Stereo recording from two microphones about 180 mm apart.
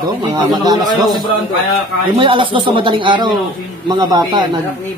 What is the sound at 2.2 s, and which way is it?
Speech, 30° right (ahead or behind).